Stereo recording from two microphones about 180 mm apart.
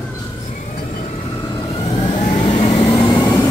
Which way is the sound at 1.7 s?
35° left (ahead or behind).